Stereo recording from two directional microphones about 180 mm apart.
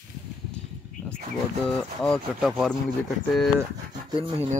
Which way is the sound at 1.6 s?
5° left (ahead or behind).